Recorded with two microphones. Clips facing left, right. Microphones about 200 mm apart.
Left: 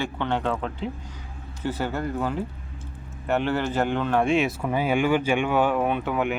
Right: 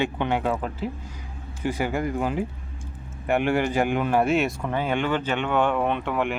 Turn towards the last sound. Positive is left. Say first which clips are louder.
# even
turn(degrees=0)  # may be behind; listen again after turning